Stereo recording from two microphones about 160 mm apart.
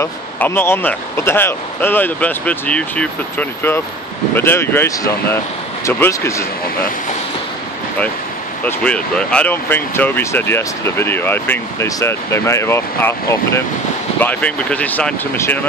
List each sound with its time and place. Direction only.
0.0 s speech: 15° left (ahead or behind)
8.6 s speech: 5° left (ahead or behind)